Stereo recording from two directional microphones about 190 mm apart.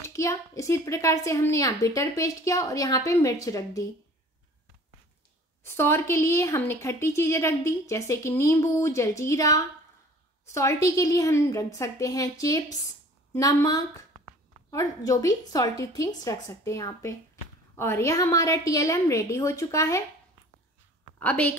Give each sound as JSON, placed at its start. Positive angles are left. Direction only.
{"t": 0.0, "sound": "a woman's voice", "side_deg": 15}
{"t": 5.6, "sound": "a woman's voice", "side_deg": 15}
{"t": 21.2, "sound": "a woman's voice", "side_deg": 10}